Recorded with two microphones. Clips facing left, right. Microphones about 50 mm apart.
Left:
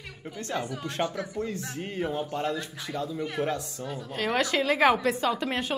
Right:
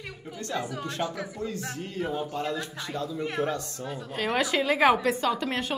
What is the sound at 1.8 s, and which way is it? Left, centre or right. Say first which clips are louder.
Speech: left 4 dB; left.